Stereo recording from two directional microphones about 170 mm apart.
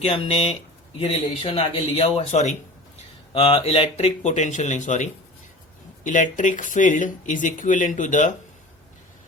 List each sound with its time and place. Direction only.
0.0 s speech: 35° left (ahead or behind)